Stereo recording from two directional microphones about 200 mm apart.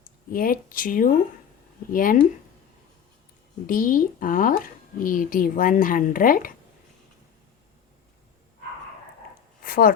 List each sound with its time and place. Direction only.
0.3 s speech: 45° left (ahead or behind)
3.7 s speech: 45° left (ahead or behind)
9.6 s a sound: 45° left (ahead or behind)